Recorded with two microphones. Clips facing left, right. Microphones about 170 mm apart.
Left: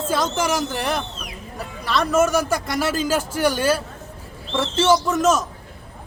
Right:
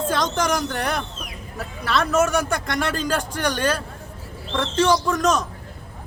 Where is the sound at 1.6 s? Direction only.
Centre (ahead or behind).